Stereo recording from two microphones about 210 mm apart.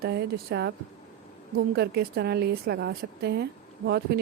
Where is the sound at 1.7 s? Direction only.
50° right (ahead or behind).